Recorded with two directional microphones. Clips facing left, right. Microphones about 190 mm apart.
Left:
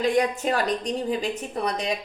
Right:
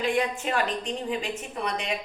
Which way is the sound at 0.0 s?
40° left (ahead or behind).